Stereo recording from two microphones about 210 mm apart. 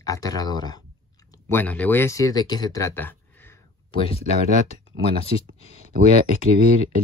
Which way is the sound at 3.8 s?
25° left (ahead or behind).